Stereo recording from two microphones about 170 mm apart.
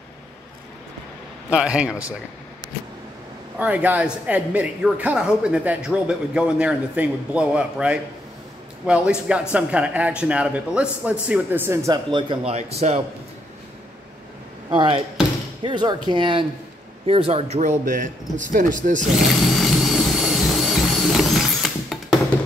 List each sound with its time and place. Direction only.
1.5 s a man's voice: 5° right (ahead or behind)
3.5 s speech: 10° right (ahead or behind); by 13.0 s 40° right (ahead or behind)
14.7 s a man's voice: 30° right (ahead or behind); by 19.0 s 50° right (ahead or behind)
19.5 s vehicle: centre (ahead or behind)